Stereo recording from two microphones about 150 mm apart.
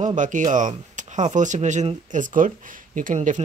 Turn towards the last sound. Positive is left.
turn(degrees=-55)  # may be behind; listen again after turning